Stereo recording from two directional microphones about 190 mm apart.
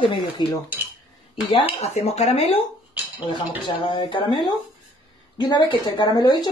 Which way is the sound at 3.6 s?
25° left (ahead or behind).